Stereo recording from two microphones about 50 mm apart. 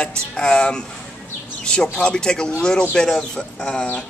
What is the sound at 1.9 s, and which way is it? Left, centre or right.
Speech, centre.